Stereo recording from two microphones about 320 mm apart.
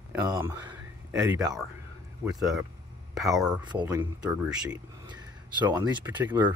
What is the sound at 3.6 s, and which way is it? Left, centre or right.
Speech, centre.